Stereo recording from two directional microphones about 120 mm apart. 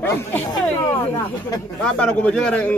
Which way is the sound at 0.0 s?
20° left (ahead or behind).